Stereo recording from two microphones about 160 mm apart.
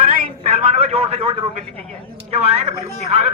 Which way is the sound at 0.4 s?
40° right (ahead or behind).